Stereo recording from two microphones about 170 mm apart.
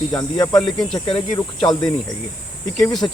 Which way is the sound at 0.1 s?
20° left (ahead or behind).